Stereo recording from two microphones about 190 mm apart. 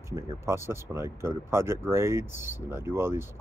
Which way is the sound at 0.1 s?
15° right (ahead or behind).